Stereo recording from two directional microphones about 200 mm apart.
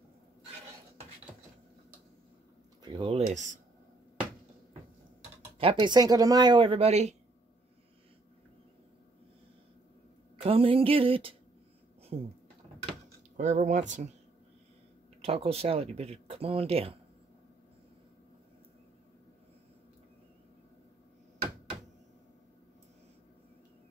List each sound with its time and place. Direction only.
2.8 s speech: 25° right (ahead or behind)
5.6 s speech: 25° right (ahead or behind)
10.3 s speech: 25° right (ahead or behind)
13.4 s speech: 35° right (ahead or behind)
15.2 s speech: 30° right (ahead or behind)